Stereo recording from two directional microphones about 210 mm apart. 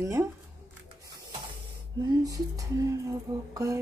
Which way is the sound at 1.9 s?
20° right (ahead or behind).